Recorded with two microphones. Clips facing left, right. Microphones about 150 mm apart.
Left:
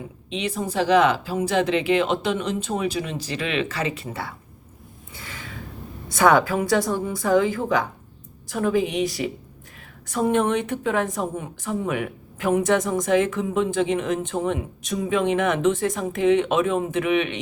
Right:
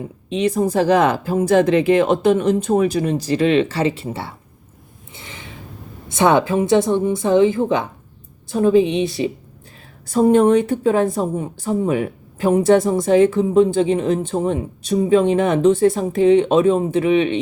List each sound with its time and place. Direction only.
0.3 s speech: 40° right (ahead or behind)
5.1 s gasp: 20° right (ahead or behind)
6.1 s a woman's voice: 25° right (ahead or behind)